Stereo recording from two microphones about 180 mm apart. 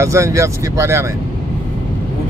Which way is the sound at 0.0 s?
15° right (ahead or behind).